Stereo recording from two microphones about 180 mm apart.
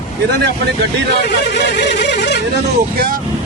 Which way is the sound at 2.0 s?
70° left (ahead or behind).